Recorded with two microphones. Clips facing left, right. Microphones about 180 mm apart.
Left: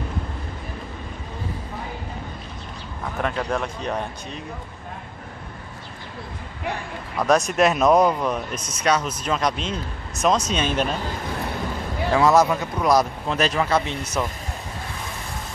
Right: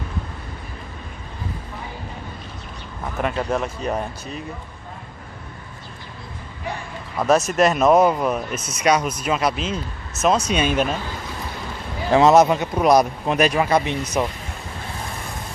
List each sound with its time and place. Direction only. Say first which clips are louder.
3.2 s speech: right 2 dB; 5° right (ahead or behind)
7.2 s speech: right 1 dB; centre (ahead or behind)
12.1 s speech: right 4 dB; 20° right (ahead or behind)